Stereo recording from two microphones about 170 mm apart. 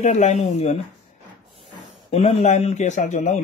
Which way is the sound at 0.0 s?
40° left (ahead or behind).